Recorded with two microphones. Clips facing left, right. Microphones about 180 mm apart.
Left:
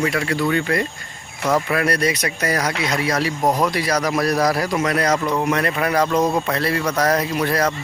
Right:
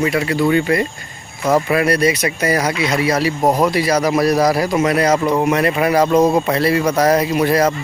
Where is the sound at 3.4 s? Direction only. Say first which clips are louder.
Right 3 dB; 25° right (ahead or behind).